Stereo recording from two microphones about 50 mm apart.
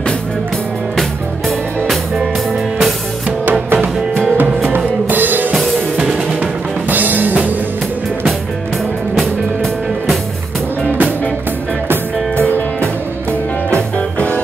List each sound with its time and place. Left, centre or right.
3.7 s music: right
4.4 s drum kit: right
6.9 s music: right
12.4 s music: left